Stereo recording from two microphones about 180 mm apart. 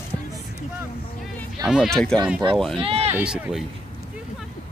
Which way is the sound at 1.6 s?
Centre (ahead or behind).